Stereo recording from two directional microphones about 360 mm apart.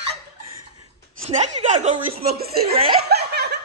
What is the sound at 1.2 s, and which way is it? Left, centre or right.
Chuckle, centre.